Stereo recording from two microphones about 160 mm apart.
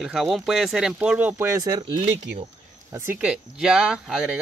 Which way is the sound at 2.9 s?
15° right (ahead or behind).